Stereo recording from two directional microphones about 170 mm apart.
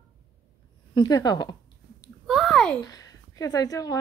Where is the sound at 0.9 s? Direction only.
25° left (ahead or behind).